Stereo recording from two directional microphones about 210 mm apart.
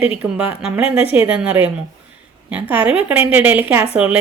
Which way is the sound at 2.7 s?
5° right (ahead or behind).